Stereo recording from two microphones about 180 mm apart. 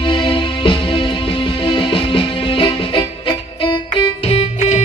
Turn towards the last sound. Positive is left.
turn(degrees=35)  # may be behind; listen again after turning